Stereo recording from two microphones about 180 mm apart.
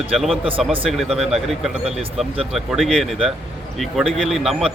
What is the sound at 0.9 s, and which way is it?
A man's voice, centre (ahead or behind).